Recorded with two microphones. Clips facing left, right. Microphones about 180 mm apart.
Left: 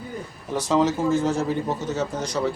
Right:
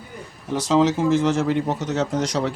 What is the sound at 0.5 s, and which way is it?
Speech, 90° right.